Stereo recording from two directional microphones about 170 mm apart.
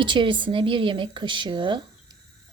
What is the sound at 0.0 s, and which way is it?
Speech, 30° right (ahead or behind).